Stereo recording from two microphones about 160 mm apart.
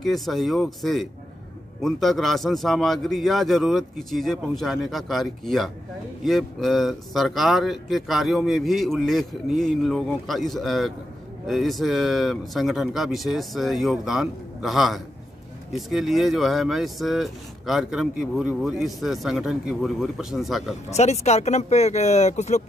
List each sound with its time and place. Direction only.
0.0 s speech: centre (ahead or behind)
20.9 s speech: 45° left (ahead or behind)